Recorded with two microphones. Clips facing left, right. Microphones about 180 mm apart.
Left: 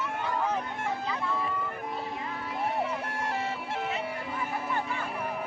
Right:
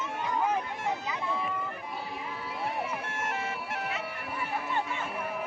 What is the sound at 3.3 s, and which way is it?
Bagpipes, 30° left (ahead or behind).